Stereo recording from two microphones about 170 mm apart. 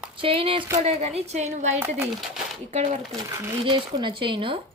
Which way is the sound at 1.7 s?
15° right (ahead or behind).